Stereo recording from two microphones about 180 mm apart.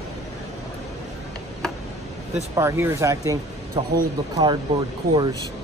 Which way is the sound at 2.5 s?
15° right (ahead or behind).